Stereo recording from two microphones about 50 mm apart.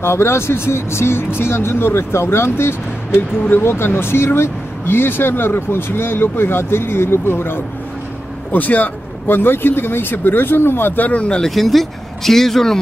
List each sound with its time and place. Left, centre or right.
0.0 s speech: left
8.5 s speech: left
11.1 s speech: left
11.4 s speech: centre